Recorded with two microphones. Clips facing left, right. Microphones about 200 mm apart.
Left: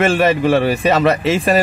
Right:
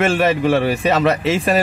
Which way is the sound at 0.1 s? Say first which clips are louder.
Left 2 dB; 45° left (ahead or behind).